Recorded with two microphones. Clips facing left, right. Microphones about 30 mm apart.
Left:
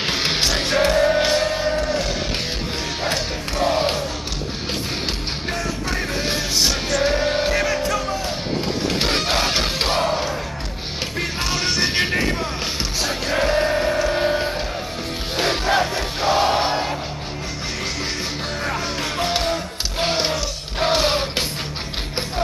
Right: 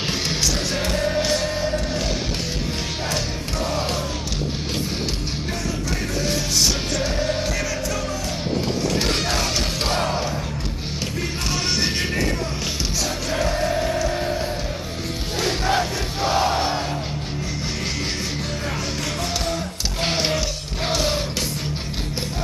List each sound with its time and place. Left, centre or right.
0.0 s music: left
3.1 s music: left
6.2 s music: left
11.5 s music: centre
12.0 s vehicle: left
13.0 s music: left
15.6 s music: centre
19.1 s music: left
20.1 s music: centre
20.9 s music: left